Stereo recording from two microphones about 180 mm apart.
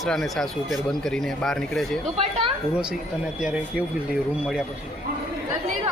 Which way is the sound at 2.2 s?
35° right (ahead or behind).